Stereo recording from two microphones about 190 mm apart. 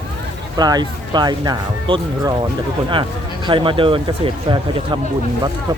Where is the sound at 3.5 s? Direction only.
25° right (ahead or behind).